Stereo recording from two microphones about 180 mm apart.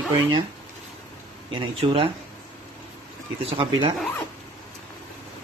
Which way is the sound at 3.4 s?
30° right (ahead or behind).